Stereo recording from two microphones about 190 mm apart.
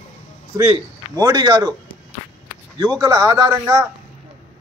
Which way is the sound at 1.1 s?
20° right (ahead or behind).